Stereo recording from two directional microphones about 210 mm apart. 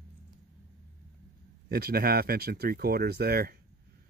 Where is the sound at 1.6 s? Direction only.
45° right (ahead or behind).